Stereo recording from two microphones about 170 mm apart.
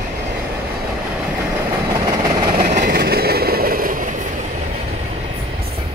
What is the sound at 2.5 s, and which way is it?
Train, 55° right (ahead or behind).